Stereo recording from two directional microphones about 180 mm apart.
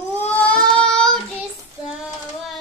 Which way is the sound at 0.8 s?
5° left (ahead or behind).